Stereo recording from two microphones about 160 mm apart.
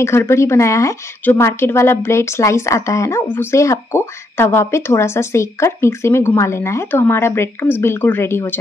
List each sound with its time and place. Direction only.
0.0 s a woman's voice: 15° left (ahead or behind)